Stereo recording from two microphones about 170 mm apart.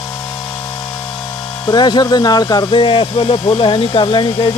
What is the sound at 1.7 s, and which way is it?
Speech, 25° left (ahead or behind).